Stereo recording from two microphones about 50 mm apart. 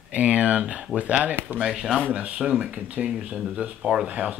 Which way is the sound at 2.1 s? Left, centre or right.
Right.